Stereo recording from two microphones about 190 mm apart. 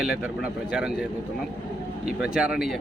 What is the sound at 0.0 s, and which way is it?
Speech, 5° right (ahead or behind).